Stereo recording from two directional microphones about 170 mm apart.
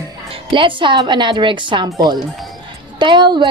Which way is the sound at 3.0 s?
25° right (ahead or behind).